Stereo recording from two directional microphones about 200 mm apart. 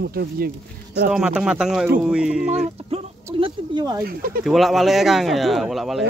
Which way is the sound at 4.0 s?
45° right (ahead or behind).